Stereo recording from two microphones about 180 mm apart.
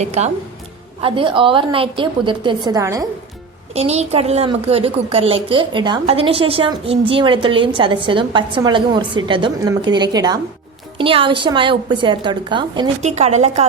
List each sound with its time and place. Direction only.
0.0 s a woman's voice: 40° right (ahead or behind)
1.0 s a woman's voice: 30° right (ahead or behind)
3.8 s a woman's voice: 35° right (ahead or behind)
13.0 s a woman's voice: 40° right (ahead or behind)